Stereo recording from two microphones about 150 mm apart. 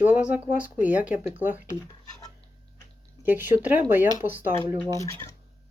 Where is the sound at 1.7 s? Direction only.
25° left (ahead or behind).